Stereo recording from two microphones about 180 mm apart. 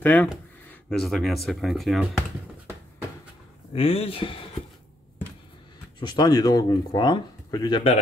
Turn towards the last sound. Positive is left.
turn(degrees=30)  # may be behind; listen again after turning